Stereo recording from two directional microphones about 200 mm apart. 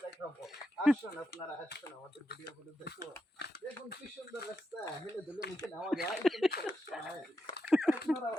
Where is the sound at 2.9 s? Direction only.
55° left (ahead or behind).